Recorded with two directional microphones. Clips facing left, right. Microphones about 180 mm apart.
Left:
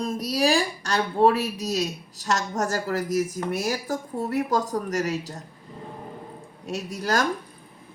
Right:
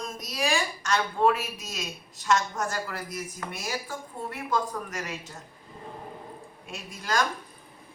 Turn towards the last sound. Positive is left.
turn(degrees=45)  # may be behind; listen again after turning